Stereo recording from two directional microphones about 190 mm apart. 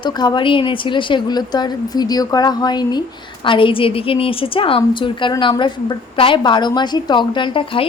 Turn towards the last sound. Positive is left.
turn(degrees=25)  # may be behind; listen again after turning